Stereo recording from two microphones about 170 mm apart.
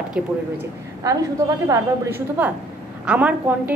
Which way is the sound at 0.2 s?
5° right (ahead or behind).